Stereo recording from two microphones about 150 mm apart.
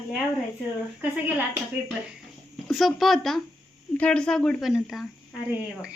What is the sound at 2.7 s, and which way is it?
A woman's voice, centre (ahead or behind).